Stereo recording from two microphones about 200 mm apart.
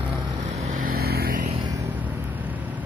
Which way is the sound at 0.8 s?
50° right (ahead or behind).